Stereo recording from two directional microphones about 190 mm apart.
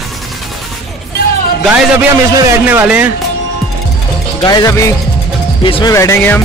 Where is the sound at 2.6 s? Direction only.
10° right (ahead or behind).